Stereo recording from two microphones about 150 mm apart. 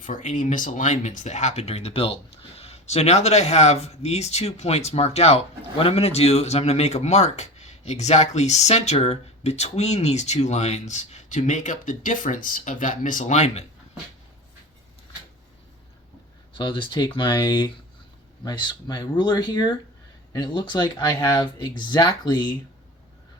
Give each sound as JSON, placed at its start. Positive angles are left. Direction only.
{"t": 0.0, "sound": "speech", "side_deg": 55}
{"t": 16.6, "sound": "speech", "side_deg": 30}